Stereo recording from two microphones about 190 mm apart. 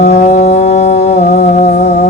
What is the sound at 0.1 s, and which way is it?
Music, 35° left (ahead or behind).